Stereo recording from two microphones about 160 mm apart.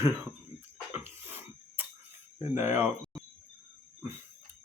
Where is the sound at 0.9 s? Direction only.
10° right (ahead or behind).